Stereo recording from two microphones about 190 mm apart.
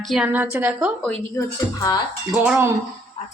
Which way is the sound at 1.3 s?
20° left (ahead or behind).